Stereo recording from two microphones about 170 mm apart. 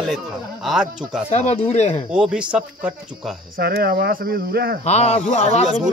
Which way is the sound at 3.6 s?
65° right (ahead or behind).